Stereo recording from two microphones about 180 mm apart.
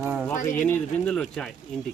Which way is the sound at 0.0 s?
10° right (ahead or behind).